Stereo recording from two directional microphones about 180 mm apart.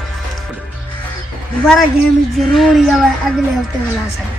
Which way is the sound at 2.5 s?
Centre (ahead or behind).